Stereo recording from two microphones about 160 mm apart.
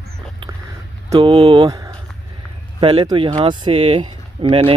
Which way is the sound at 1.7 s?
20° right (ahead or behind).